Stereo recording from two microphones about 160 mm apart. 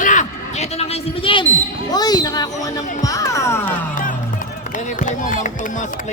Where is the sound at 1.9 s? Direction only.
25° left (ahead or behind).